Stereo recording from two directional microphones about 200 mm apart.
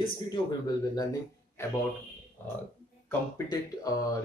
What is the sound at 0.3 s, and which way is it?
Speech, 20° left (ahead or behind).